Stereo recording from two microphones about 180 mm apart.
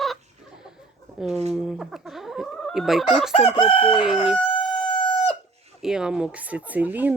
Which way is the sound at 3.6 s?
30° left (ahead or behind).